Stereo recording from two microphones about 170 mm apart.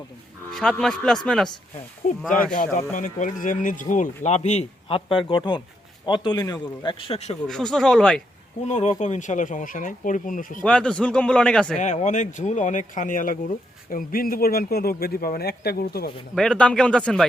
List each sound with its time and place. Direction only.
0.5 s a man's voice: 5° left (ahead or behind)
2.5 s a man's voice: 50° left (ahead or behind); by 6.9 s 25° left (ahead or behind)
7.0 s speech: 35° left (ahead or behind)
7.4 s a man's voice: 5° left (ahead or behind)
8.6 s speech: 45° left (ahead or behind)
10.6 s a man's voice: 5° left (ahead or behind)
11.8 s speech: 45° left (ahead or behind); by 16.1 s 65° left (ahead or behind)
16.3 s a man's voice: 5° left (ahead or behind)